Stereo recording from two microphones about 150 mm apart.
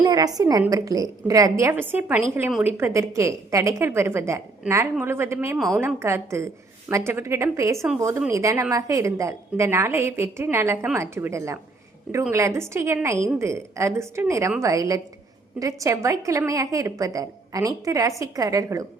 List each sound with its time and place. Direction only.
0.0 s a woman's voice: 25° right (ahead or behind); by 2.7 s 5° right (ahead or behind)
2.7 s a woman's voice: 15° right (ahead or behind)
5.5 s a woman's voice: centre (ahead or behind)
5.8 s a woman's voice: 15° right (ahead or behind)